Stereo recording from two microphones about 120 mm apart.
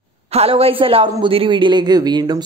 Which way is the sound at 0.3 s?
55° right (ahead or behind).